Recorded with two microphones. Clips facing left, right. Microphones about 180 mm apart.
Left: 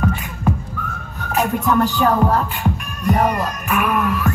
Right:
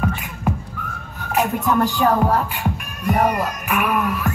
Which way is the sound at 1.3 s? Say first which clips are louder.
Left 1 dB; 10° right (ahead or behind).